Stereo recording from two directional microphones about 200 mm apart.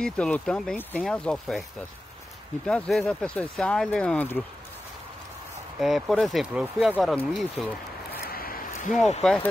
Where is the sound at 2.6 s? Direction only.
5° left (ahead or behind).